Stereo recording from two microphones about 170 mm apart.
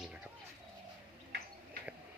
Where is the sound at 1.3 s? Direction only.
75° right (ahead or behind).